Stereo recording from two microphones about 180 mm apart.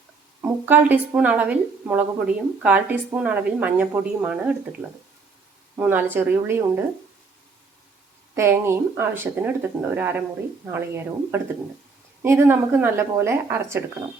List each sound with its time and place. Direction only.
0.4 s a woman's voice: 10° right (ahead or behind)
5.8 s a woman's voice: 10° right (ahead or behind)
8.4 s a woman's voice: 15° right (ahead or behind)